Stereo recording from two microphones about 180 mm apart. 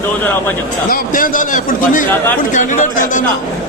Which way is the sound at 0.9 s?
50° left (ahead or behind).